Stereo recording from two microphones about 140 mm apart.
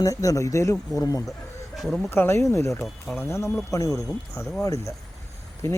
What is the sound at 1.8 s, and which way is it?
Speech, centre (ahead or behind).